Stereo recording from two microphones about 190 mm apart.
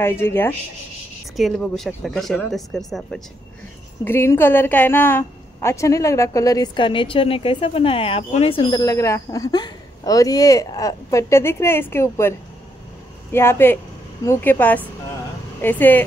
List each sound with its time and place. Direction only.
0.0 s a woman's voice: 10° left (ahead or behind)
1.3 s speech: centre (ahead or behind)
4.0 s a woman's voice: 10° left (ahead or behind)